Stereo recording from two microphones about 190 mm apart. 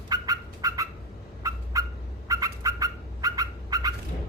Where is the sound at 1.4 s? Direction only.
20° right (ahead or behind).